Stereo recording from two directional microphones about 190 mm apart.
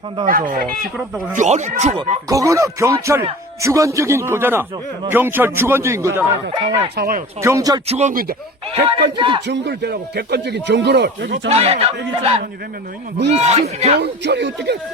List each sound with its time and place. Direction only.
0.3 s speech: 45° right (ahead or behind)
2.3 s a man's voice: 15° right (ahead or behind)
6.9 s speech: 55° right (ahead or behind)
7.4 s a man's voice: 15° right (ahead or behind)
7.9 s speech: 35° right (ahead or behind)
8.7 s speech: 30° right (ahead or behind)
9.5 s speech: 60° right (ahead or behind)
11.4 s speech: 30° right (ahead or behind)
13.4 s speech: 35° right (ahead or behind)
14.0 s speech: 65° right (ahead or behind)